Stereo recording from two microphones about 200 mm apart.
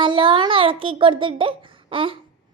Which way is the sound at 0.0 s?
25° right (ahead or behind).